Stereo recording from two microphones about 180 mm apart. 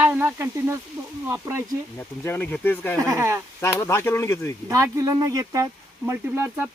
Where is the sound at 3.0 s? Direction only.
15° right (ahead or behind).